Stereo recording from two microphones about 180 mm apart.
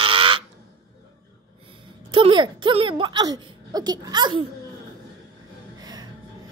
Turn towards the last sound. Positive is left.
turn(degrees=-20)  # may be behind; listen again after turning